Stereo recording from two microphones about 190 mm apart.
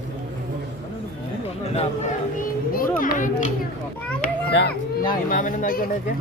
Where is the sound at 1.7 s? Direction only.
35° left (ahead or behind).